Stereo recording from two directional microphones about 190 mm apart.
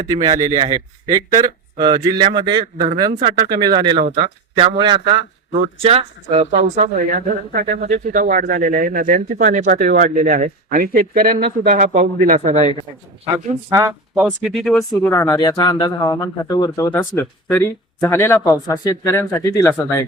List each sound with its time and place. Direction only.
0.3 s a man's voice: 20° right (ahead or behind); by 12.6 s 35° right (ahead or behind)
13.7 s speech: 15° right (ahead or behind)
14.3 s speech: centre (ahead or behind)
15.1 s speech: 15° left (ahead or behind)